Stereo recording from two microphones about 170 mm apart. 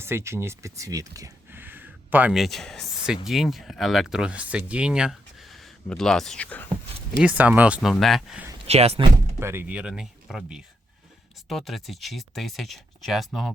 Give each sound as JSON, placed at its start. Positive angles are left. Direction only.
{"t": 0.0, "sound": "speech", "side_deg": -15}
{"t": 7.2, "sound": "speech", "side_deg": -10}
{"t": 8.6, "sound": "speech", "side_deg": -35}
{"t": 9.4, "sound": "speech", "side_deg": -15}